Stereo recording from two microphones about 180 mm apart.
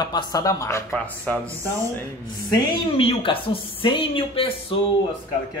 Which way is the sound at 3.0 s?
30° left (ahead or behind).